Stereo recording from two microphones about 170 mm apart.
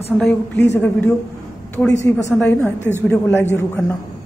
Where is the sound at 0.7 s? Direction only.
10° left (ahead or behind).